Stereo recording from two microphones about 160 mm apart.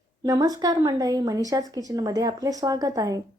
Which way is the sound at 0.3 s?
25° right (ahead or behind).